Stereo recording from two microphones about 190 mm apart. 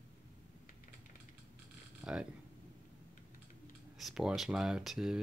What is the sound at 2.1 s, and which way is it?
Speech, 5° right (ahead or behind).